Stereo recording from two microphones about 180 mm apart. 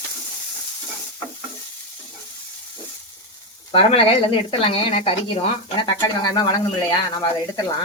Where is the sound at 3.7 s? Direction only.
30° left (ahead or behind).